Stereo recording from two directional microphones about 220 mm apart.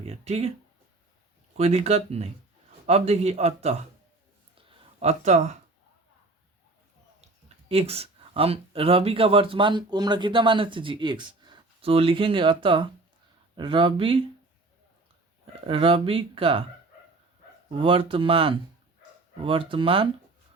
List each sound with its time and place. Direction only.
0.0 s speech: 25° right (ahead or behind)
1.5 s speech: 25° right (ahead or behind)
4.5 s a sound: 25° right (ahead or behind)
7.7 s speech: 25° right (ahead or behind)
15.6 s speech: 25° right (ahead or behind)
17.7 s speech: 25° right (ahead or behind)